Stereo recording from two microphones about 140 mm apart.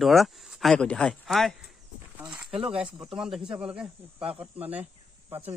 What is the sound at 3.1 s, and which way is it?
Speech, 5° right (ahead or behind).